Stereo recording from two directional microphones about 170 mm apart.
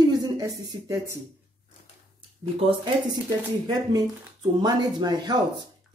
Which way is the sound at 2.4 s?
30° right (ahead or behind).